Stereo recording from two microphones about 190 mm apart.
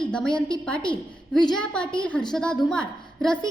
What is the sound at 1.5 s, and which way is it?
A woman's voice, 5° left (ahead or behind).